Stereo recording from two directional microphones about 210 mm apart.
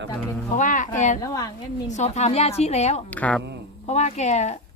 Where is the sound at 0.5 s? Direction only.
35° left (ahead or behind).